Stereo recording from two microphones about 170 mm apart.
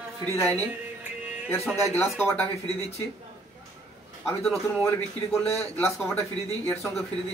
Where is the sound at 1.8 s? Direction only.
15° left (ahead or behind).